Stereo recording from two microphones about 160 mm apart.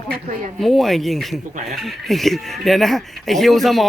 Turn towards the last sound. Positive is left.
turn(degrees=0)  # may be behind; listen again after turning